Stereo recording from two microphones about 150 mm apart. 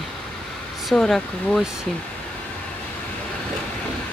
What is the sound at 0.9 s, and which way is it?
Speech, 5° left (ahead or behind).